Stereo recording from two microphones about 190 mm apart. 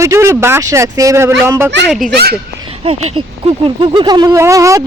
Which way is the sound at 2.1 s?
60° right (ahead or behind).